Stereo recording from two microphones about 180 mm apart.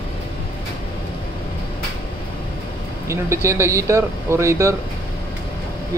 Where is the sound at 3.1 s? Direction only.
15° right (ahead or behind).